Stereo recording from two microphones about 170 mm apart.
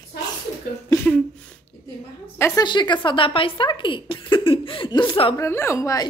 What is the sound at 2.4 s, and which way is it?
Speech, 25° left (ahead or behind).